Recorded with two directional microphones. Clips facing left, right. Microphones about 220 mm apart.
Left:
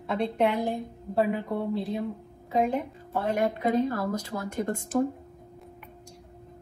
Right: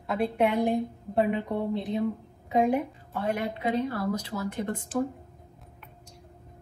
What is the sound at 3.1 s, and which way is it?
A woman's voice, 45° left (ahead or behind).